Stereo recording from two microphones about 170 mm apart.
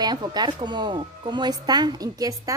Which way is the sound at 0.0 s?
25° right (ahead or behind).